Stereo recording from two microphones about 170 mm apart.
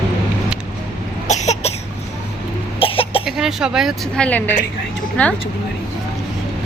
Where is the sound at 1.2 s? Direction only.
40° left (ahead or behind).